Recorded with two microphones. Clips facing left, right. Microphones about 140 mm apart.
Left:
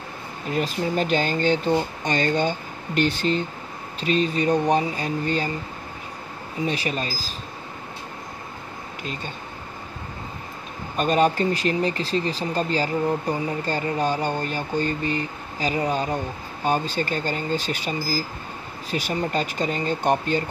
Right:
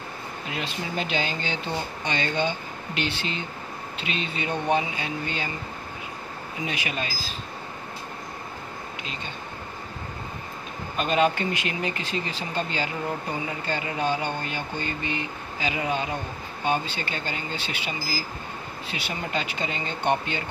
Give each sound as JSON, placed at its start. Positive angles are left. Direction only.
{"t": 0.5, "sound": "speech", "side_deg": 45}
{"t": 6.6, "sound": "speech", "side_deg": 35}
{"t": 11.0, "sound": "speech", "side_deg": 40}